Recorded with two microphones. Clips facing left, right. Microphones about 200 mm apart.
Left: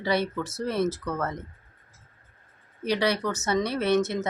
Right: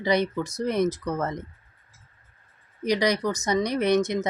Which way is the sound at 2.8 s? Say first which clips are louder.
Right 2 dB; 15° right (ahead or behind).